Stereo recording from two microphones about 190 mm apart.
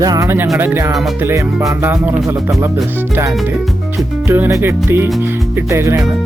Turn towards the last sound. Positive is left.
turn(degrees=-15)  # may be behind; listen again after turning